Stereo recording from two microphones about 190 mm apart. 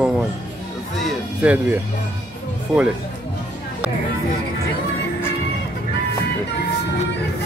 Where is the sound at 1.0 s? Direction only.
5° right (ahead or behind).